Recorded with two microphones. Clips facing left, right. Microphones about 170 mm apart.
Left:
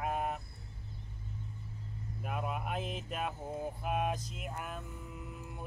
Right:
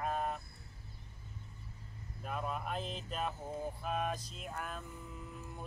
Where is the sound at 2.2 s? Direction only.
10° left (ahead or behind).